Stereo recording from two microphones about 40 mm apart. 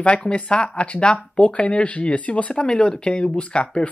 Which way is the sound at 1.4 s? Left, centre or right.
Left.